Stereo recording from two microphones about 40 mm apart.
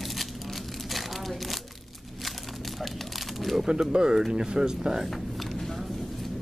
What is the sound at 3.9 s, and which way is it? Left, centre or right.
Speech, centre.